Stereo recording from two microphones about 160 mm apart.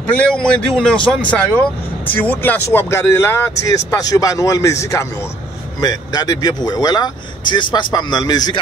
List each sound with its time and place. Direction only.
0.1 s speech: 5° left (ahead or behind); by 8.5 s 25° left (ahead or behind)